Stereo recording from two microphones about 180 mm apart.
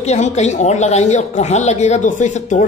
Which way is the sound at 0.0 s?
40° left (ahead or behind).